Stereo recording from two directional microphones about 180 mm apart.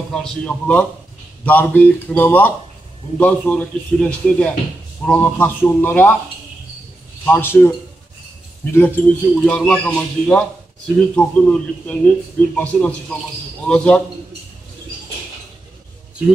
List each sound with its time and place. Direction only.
0.1 s a man's voice: 5° left (ahead or behind)
7.2 s a man's voice: 10° left (ahead or behind)
8.7 s a man's voice: 10° left (ahead or behind)